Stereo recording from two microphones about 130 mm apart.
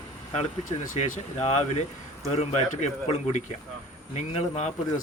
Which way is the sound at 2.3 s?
60° left (ahead or behind).